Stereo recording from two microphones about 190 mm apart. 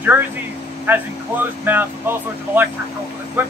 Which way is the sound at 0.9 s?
10° right (ahead or behind).